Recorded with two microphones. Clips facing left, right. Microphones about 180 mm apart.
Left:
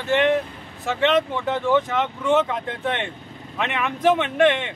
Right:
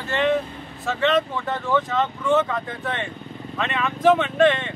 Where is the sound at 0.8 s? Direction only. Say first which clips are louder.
Left 1 dB; 15° left (ahead or behind).